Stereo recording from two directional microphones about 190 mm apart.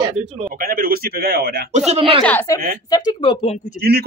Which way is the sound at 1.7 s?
35° right (ahead or behind).